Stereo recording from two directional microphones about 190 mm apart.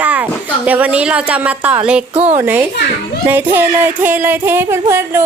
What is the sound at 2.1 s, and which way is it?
Speech, 35° right (ahead or behind).